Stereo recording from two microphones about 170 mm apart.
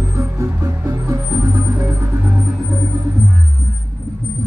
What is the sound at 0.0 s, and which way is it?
Music, 20° right (ahead or behind).